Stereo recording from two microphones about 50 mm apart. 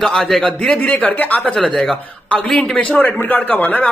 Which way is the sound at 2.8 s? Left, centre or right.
Left.